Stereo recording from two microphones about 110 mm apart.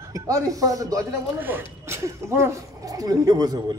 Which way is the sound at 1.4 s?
20° right (ahead or behind).